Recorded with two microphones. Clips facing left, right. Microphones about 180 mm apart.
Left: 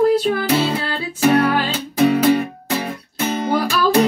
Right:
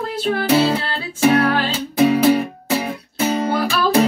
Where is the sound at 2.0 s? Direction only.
5° right (ahead or behind).